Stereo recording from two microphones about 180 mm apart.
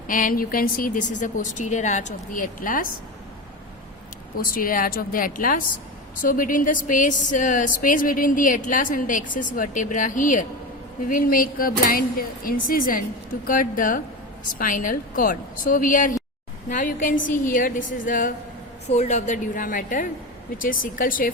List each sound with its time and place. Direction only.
0.1 s a woman's voice: 50° left (ahead or behind)
4.4 s a woman's voice: 55° left (ahead or behind)